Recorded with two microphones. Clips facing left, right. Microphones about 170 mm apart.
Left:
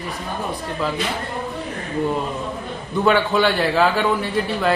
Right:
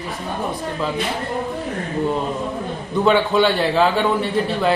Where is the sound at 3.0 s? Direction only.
Centre (ahead or behind).